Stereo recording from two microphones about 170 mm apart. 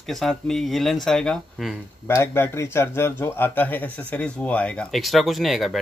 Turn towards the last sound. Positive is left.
turn(degrees=0)  # may be behind; listen again after turning